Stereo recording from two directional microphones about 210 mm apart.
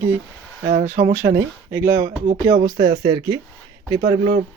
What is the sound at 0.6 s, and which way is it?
Speech, 40° right (ahead or behind).